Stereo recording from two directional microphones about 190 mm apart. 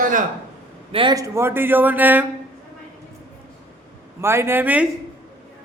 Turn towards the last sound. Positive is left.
turn(degrees=-10)  # may be behind; listen again after turning